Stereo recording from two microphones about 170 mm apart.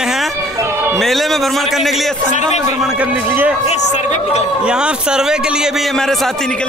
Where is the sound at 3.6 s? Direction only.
40° left (ahead or behind).